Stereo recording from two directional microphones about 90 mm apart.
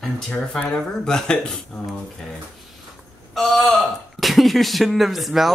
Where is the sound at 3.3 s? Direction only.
Centre (ahead or behind).